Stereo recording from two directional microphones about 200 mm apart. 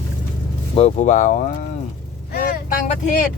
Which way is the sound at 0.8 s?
35° left (ahead or behind).